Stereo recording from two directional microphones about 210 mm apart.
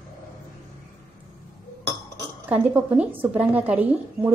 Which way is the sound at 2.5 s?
5° right (ahead or behind).